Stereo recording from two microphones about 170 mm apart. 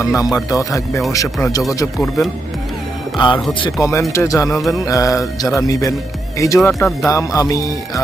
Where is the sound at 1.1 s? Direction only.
20° left (ahead or behind).